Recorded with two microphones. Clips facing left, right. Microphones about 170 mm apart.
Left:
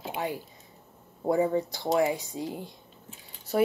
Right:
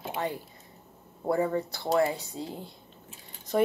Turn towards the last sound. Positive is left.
turn(degrees=5)  # may be behind; listen again after turning